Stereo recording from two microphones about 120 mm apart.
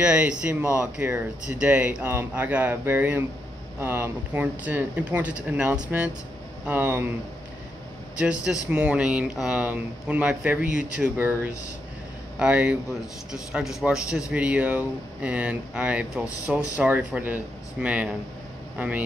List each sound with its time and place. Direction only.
0.0 s speech: 10° right (ahead or behind)
8.2 s speech: 10° right (ahead or behind)
12.4 s a man's voice: 10° right (ahead or behind)